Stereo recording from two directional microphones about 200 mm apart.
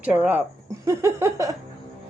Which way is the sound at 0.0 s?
10° right (ahead or behind).